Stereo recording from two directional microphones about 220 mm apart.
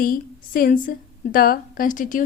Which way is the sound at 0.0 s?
40° left (ahead or behind).